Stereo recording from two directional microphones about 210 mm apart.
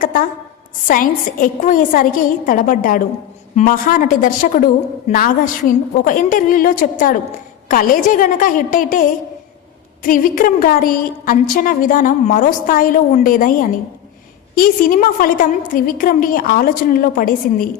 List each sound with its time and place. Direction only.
0.0 s a woman's voice: 40° left (ahead or behind)